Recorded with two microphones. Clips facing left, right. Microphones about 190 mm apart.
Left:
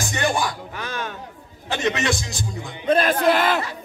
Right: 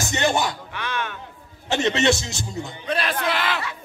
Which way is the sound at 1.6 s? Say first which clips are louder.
Right 3 dB; 25° right (ahead or behind).